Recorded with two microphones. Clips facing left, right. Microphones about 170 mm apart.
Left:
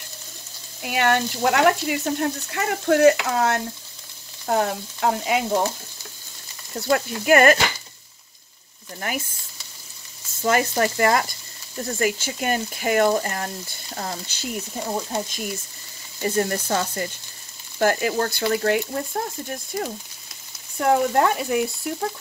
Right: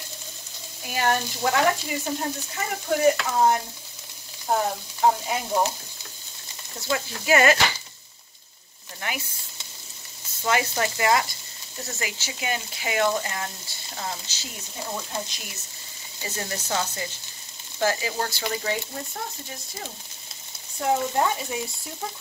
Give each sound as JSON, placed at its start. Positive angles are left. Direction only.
{"t": 0.8, "sound": "speech", "side_deg": 70}
{"t": 3.3, "sound": "frying", "side_deg": 80}
{"t": 4.5, "sound": "speech", "side_deg": 75}
{"t": 6.9, "sound": "speech", "side_deg": 50}
{"t": 10.4, "sound": "speech", "side_deg": 45}
{"t": 14.9, "sound": "speech", "side_deg": 40}
{"t": 20.8, "sound": "speech", "side_deg": 65}